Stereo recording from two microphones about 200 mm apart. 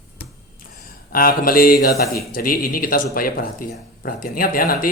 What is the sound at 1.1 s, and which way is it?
A man's voice, 45° left (ahead or behind).